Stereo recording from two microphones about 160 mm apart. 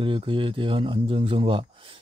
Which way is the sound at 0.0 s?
30° right (ahead or behind).